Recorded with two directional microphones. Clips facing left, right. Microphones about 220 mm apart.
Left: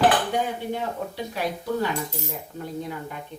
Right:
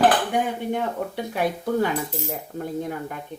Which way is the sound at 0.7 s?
55° right (ahead or behind).